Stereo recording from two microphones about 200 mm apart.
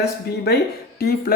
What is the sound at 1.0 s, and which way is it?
Speech, 50° left (ahead or behind).